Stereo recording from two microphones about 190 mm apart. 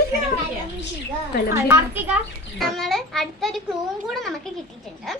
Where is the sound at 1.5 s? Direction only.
10° right (ahead or behind).